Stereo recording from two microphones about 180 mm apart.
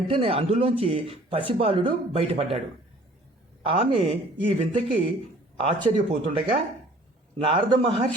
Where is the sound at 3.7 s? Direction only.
35° right (ahead or behind).